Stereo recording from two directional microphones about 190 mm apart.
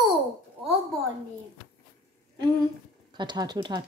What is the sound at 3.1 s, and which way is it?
Speech, 20° right (ahead or behind).